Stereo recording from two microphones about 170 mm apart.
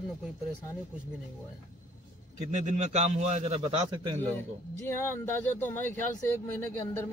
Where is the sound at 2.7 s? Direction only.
40° right (ahead or behind).